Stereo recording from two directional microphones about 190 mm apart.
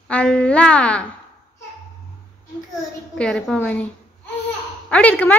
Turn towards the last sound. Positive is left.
turn(degrees=5)  # may be behind; listen again after turning